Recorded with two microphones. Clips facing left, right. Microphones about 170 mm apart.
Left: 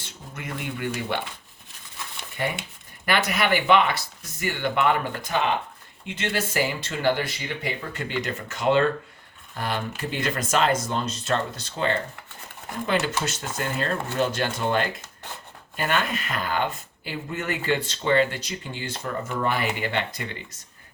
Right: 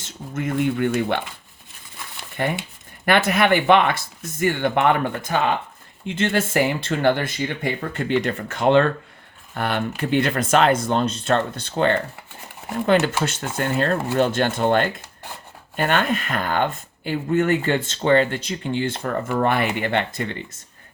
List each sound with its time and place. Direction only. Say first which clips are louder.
0.3 s speech: right 11 dB; 50° right (ahead or behind)
3.1 s speech: right 5 dB; 50° right (ahead or behind)